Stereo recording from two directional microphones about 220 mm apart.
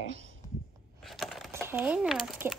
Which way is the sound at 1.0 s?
Centre (ahead or behind).